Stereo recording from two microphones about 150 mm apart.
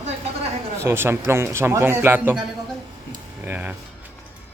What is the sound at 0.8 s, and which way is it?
A man's voice, 15° right (ahead or behind).